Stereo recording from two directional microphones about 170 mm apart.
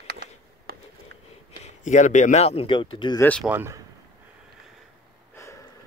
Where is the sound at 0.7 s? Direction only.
65° right (ahead or behind).